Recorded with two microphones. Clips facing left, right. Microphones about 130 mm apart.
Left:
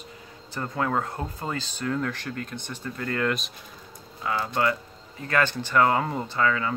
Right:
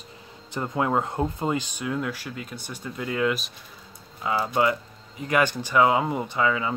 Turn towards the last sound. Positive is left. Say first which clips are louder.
# right 1 dB
turn(degrees=-15)  # may be behind; listen again after turning